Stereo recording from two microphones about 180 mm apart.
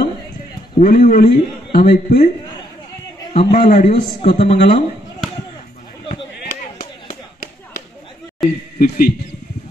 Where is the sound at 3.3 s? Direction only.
35° left (ahead or behind).